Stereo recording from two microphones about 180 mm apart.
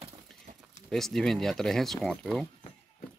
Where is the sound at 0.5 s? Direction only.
45° right (ahead or behind).